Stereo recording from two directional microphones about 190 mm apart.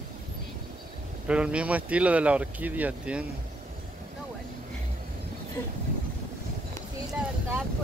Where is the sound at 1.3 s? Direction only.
5° right (ahead or behind).